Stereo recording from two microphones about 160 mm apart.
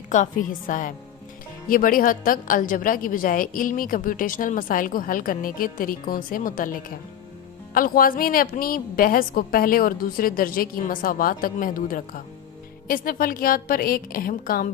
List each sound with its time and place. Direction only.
0.1 s a woman's voice: 55° left (ahead or behind)